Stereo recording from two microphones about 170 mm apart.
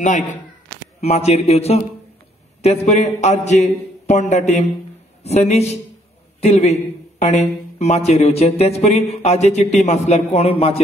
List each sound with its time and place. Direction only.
0.0 s a man's voice: 45° left (ahead or behind)